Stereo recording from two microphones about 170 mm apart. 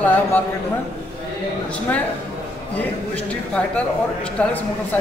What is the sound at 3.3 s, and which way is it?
Speech, 5° left (ahead or behind).